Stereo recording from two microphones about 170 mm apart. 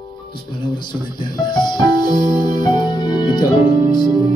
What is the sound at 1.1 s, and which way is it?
Music, 25° left (ahead or behind).